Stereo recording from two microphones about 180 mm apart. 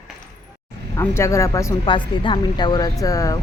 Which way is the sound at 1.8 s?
30° left (ahead or behind).